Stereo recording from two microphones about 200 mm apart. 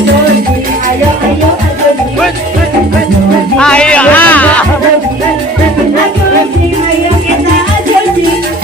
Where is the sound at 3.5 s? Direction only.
5° left (ahead or behind).